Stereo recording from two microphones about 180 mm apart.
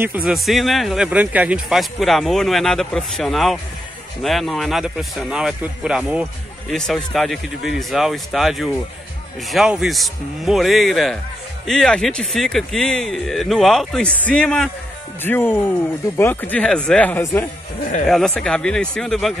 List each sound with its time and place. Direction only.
0.0 s speech: 5° right (ahead or behind); by 17.5 s 15° left (ahead or behind)
18.0 s speech: centre (ahead or behind)